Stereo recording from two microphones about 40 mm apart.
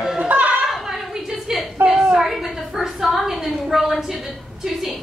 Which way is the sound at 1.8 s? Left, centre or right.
Right.